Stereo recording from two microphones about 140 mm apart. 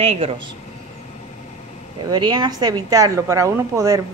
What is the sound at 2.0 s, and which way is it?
A woman's voice, 30° right (ahead or behind).